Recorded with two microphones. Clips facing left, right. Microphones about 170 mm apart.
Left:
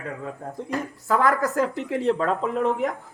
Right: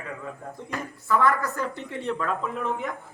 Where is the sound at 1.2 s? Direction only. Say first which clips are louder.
Left 6 dB; 90° left.